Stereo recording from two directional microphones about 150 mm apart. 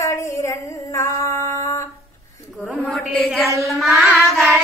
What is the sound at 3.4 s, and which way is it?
Child singing, 20° right (ahead or behind).